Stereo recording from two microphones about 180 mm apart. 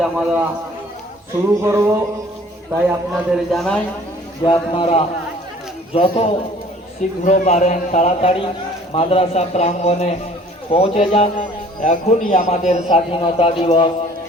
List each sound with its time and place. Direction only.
0.0 s a man's voice: 5° right (ahead or behind)
1.6 s music: 15° right (ahead or behind)
3.1 s a man's voice: centre (ahead or behind)
4.4 s a man's voice: 30° left (ahead or behind)